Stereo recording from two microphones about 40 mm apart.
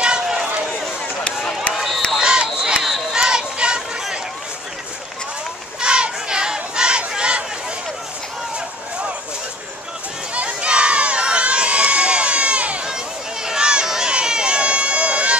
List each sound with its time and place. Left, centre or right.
0.0 s run: right
1.7 s run: centre
2.2 s a sound: right
5.8 s a sound: right
10.3 s crowd: right
12.8 s run: centre